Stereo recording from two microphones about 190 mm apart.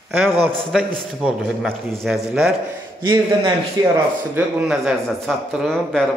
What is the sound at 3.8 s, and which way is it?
Speech, 20° right (ahead or behind).